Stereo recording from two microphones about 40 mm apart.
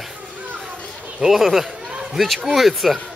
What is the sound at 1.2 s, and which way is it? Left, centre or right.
Speech, centre.